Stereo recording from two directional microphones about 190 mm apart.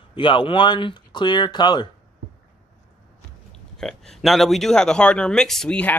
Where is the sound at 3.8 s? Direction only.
Centre (ahead or behind).